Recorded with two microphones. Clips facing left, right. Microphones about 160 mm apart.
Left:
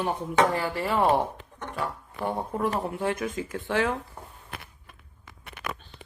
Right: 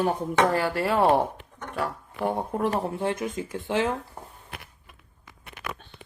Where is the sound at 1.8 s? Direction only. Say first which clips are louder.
Right 3 dB; 35° right (ahead or behind).